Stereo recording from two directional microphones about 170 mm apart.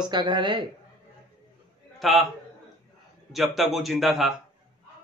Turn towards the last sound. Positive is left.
turn(degrees=0)  # may be behind; listen again after turning